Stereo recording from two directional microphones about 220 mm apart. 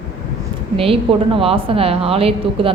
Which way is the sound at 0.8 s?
25° right (ahead or behind).